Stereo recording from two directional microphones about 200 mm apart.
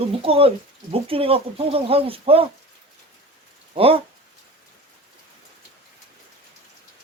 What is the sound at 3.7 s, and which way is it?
Speech, 30° right (ahead or behind).